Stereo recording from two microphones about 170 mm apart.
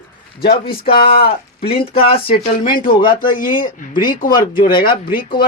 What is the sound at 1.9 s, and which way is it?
Speech, 35° left (ahead or behind).